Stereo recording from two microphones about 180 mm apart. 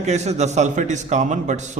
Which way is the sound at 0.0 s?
40° right (ahead or behind).